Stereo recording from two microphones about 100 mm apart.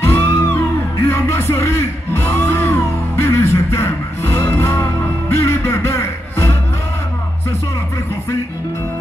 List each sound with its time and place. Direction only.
0.0 s music: 25° left (ahead or behind)